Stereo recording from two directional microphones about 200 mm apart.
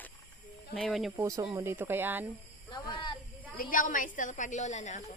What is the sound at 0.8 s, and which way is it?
Speech, centre (ahead or behind).